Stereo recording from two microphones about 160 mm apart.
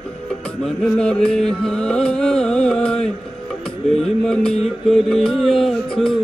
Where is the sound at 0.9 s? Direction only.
5° left (ahead or behind).